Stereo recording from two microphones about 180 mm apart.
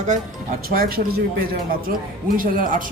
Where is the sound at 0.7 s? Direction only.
55° right (ahead or behind).